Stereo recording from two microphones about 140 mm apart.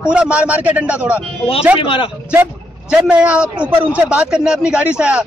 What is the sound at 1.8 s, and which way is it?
Speech, 35° left (ahead or behind).